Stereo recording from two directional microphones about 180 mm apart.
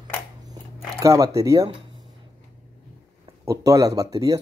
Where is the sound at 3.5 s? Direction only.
15° right (ahead or behind).